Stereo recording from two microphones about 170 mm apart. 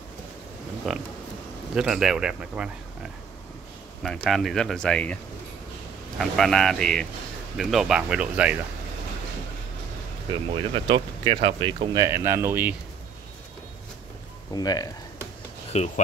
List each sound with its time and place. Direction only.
0.8 s speech: centre (ahead or behind)
10.3 s speech: 30° right (ahead or behind); by 12.7 s 10° right (ahead or behind)
14.5 s speech: 20° left (ahead or behind)
15.7 s speech: 40° left (ahead or behind)